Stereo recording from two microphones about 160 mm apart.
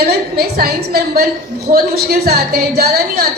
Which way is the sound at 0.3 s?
70° right (ahead or behind).